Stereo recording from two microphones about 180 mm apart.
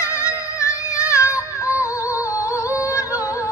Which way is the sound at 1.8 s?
15° left (ahead or behind).